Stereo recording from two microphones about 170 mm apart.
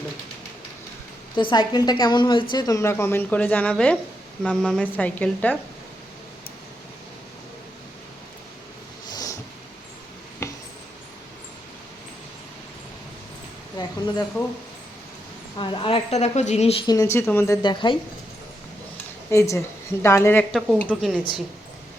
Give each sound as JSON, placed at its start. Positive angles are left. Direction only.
{"t": 1.4, "sound": "a woman's voice", "side_deg": 25}
{"t": 9.1, "sound": "a sound", "side_deg": 20}
{"t": 10.4, "sound": "a sound", "side_deg": 15}
{"t": 13.8, "sound": "a sound", "side_deg": 25}
{"t": 15.5, "sound": "a woman's voice", "side_deg": 30}
{"t": 16.8, "sound": "a woman's voice", "side_deg": 20}
{"t": 17.6, "sound": "a woman's voice", "side_deg": 25}
{"t": 19.3, "sound": "a woman's voice", "side_deg": 15}
{"t": 20.5, "sound": "a woman's voice", "side_deg": -5}